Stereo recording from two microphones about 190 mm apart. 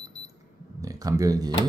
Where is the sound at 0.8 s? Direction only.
20° right (ahead or behind).